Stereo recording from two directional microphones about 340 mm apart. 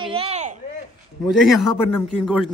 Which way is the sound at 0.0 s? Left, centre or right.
Centre.